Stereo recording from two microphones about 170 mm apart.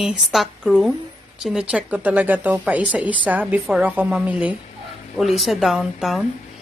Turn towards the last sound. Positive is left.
turn(degrees=0)  # may be behind; listen again after turning